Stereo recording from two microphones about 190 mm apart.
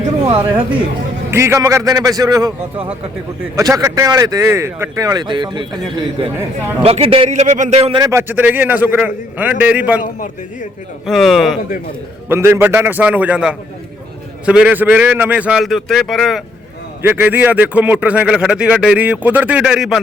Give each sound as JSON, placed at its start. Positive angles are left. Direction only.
{"t": 1.3, "sound": "a man's voice", "side_deg": -15}
{"t": 8.0, "sound": "speech", "side_deg": -10}
{"t": 10.0, "sound": "a man's voice", "side_deg": 45}
{"t": 11.0, "sound": "a man's voice", "side_deg": 0}
{"t": 12.3, "sound": "a man's voice", "side_deg": -10}
{"t": 17.0, "sound": "speech", "side_deg": -10}